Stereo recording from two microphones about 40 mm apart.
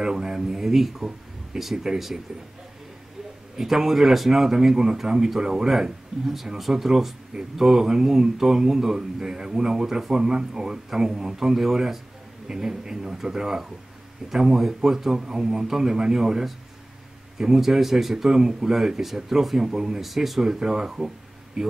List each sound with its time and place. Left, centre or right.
0.0 s speech: centre
3.5 s speech: centre